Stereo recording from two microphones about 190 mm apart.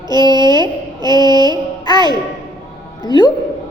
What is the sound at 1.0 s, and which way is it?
Speech, 20° left (ahead or behind).